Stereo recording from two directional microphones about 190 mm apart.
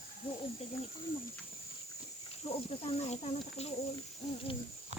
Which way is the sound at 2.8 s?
35° left (ahead or behind).